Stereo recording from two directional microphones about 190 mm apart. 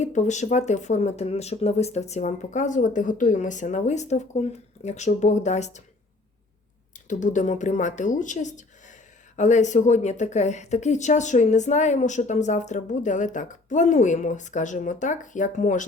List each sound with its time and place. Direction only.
0.0 s speech: 40° left (ahead or behind)
7.1 s speech: 40° left (ahead or behind)